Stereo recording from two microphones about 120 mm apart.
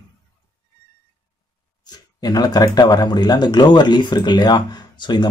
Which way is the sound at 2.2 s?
35° left (ahead or behind).